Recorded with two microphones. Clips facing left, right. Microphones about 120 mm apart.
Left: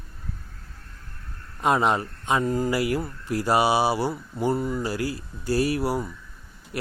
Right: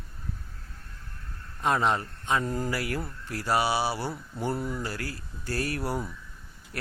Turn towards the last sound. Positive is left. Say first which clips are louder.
# left 7 dB
turn(degrees=15)  # may be behind; listen again after turning